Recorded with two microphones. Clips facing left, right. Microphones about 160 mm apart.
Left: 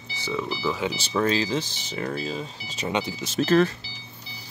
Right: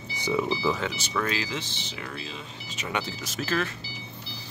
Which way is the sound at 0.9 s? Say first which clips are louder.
Left 6 dB; 30° left (ahead or behind).